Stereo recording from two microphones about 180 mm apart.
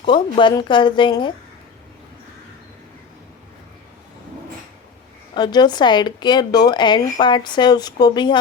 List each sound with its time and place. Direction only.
0.0 s a woman's voice: 25° left (ahead or behind)
5.3 s a woman's voice: 25° left (ahead or behind)